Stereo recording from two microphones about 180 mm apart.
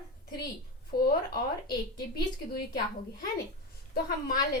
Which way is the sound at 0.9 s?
55° left (ahead or behind).